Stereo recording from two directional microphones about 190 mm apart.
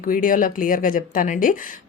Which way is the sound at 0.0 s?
45° left (ahead or behind).